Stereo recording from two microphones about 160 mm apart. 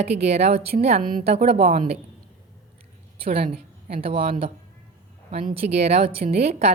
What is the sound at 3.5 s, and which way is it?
A woman's voice, 35° right (ahead or behind).